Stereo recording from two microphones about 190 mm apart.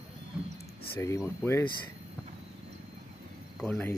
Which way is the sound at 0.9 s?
15° left (ahead or behind).